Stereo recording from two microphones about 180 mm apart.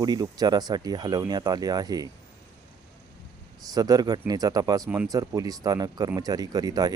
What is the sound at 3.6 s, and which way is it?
Speech, 20° right (ahead or behind).